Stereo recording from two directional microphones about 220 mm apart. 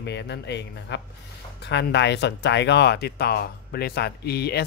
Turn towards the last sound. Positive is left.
turn(degrees=45)  # may be behind; listen again after turning